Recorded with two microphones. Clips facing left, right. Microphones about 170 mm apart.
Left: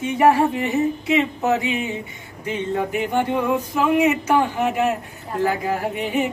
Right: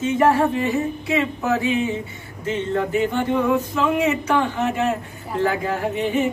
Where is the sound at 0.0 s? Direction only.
15° left (ahead or behind).